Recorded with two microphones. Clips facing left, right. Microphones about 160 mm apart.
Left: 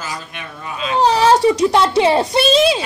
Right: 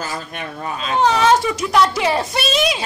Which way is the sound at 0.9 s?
35° left (ahead or behind).